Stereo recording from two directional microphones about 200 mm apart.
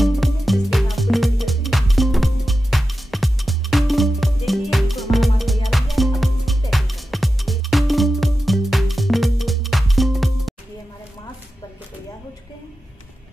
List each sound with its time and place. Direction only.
0.0 s music: centre (ahead or behind)